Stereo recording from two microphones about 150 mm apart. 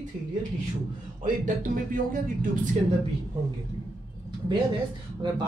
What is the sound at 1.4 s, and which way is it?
Speech, 70° right (ahead or behind).